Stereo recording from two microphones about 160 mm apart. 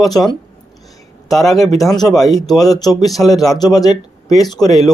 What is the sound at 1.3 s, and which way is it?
Speech, centre (ahead or behind).